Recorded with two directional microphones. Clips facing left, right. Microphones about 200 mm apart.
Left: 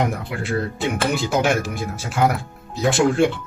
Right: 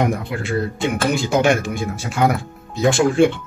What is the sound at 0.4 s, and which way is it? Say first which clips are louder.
Speech: right 2 dB; centre (ahead or behind).